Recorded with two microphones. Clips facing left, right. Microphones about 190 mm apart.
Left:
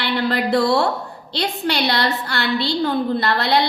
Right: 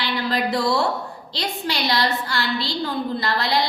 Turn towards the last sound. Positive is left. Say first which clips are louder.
# left 4 dB
turn(degrees=60)  # may be behind; listen again after turning